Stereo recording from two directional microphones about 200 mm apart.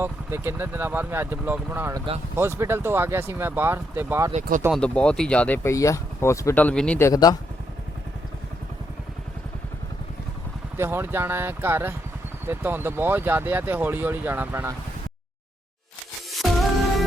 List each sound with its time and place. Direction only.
0.0 s speech: 10° right (ahead or behind)
4.7 s speech: 5° left (ahead or behind)
7.1 s speech: 20° left (ahead or behind)
10.8 s speech: 10° right (ahead or behind)
16.3 s music: centre (ahead or behind)